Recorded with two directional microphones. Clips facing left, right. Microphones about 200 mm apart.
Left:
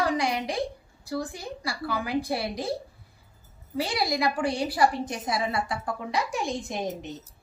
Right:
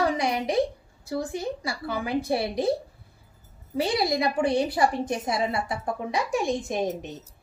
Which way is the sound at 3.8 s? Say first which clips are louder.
Right 3 dB; 25° right (ahead or behind).